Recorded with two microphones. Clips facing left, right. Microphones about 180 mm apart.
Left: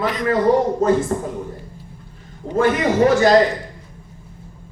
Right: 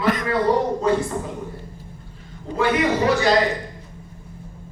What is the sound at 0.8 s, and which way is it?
Speech, 45° left (ahead or behind).